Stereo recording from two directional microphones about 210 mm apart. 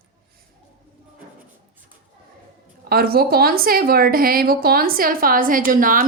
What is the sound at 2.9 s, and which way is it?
A woman's voice, 45° right (ahead or behind).